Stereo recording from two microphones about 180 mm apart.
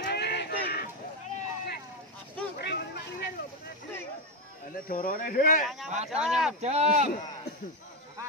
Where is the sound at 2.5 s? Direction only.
65° left (ahead or behind).